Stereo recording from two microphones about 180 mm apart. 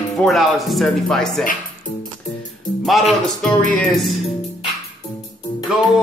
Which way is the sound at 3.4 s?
5° left (ahead or behind).